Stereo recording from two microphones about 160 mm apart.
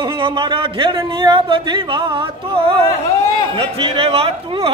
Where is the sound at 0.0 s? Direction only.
30° right (ahead or behind).